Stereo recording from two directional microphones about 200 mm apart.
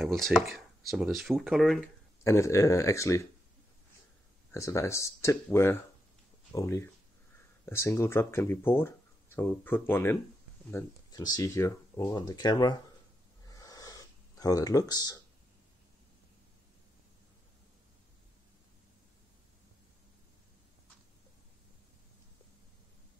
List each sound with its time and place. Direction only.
0.0 s speech: centre (ahead or behind)
2.2 s speech: 15° left (ahead or behind)
4.5 s speech: 15° left (ahead or behind)
13.5 s a sound: 20° left (ahead or behind)